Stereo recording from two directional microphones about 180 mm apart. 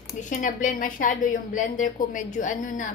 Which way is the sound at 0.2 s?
45° left (ahead or behind).